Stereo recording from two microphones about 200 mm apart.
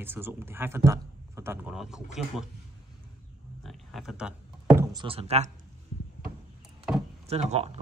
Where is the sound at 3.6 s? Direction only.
Centre (ahead or behind).